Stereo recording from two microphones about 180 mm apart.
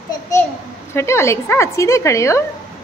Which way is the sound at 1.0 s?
15° left (ahead or behind).